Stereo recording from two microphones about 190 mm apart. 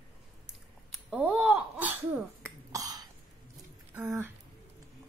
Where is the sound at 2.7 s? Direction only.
20° right (ahead or behind).